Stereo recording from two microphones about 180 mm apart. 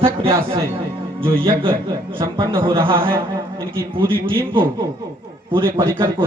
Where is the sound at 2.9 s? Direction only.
30° right (ahead or behind).